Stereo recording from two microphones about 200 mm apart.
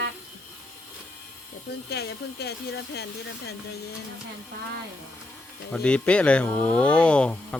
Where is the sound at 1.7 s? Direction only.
55° left (ahead or behind).